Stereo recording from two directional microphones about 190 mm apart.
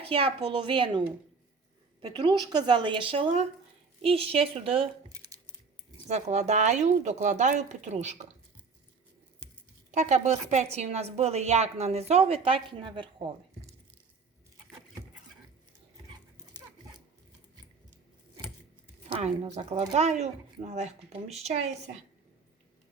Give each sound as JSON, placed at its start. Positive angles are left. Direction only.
{"t": 0.1, "sound": "a woman's voice", "side_deg": -30}
{"t": 5.0, "sound": "a sound", "side_deg": -20}
{"t": 6.1, "sound": "a woman's voice", "side_deg": -35}
{"t": 9.9, "sound": "a woman's voice", "side_deg": -40}
{"t": 19.0, "sound": "a woman's voice", "side_deg": -35}